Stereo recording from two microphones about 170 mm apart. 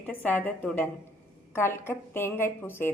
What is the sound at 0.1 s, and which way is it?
Speech, 10° left (ahead or behind).